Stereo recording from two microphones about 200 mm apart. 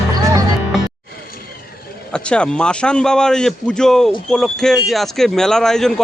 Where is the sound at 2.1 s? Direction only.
5° left (ahead or behind).